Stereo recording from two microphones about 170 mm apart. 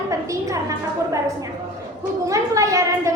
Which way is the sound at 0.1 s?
20° right (ahead or behind).